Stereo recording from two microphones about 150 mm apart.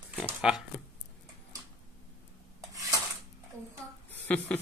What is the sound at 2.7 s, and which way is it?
Dishes, 25° right (ahead or behind).